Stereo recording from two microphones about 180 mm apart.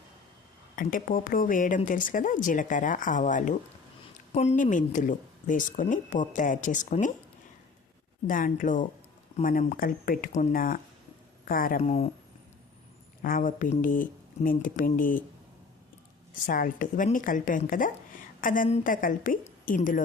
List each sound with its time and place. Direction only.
0.8 s speech: 50° left (ahead or behind)
8.3 s speech: 50° left (ahead or behind)
13.2 s speech: 50° left (ahead or behind)
16.5 s speech: 50° left (ahead or behind)